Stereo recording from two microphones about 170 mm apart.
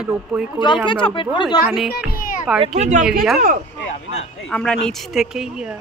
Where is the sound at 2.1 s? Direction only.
55° left (ahead or behind).